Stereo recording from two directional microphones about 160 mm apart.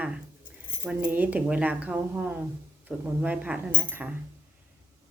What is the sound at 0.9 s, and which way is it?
A woman's voice, 10° right (ahead or behind).